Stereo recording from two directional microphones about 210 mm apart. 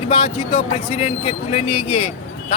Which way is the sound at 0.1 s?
30° left (ahead or behind).